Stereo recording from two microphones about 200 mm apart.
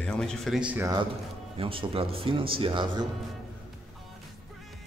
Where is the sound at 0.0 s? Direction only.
5° left (ahead or behind).